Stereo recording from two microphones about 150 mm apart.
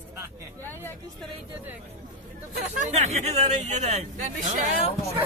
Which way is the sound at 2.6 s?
50° right (ahead or behind).